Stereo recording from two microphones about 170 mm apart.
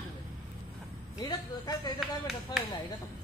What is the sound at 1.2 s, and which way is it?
Speech, 25° left (ahead or behind).